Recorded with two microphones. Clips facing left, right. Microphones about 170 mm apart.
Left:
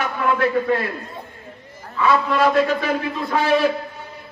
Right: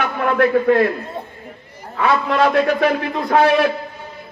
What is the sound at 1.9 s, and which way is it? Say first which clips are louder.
A man's voice: right 1 dB; 60° right (ahead or behind).